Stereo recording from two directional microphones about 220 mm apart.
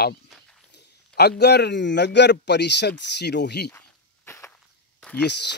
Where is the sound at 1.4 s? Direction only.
50° left (ahead or behind).